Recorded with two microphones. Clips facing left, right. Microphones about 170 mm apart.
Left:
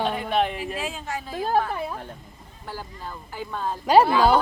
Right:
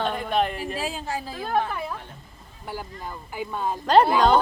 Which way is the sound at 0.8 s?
35° right (ahead or behind).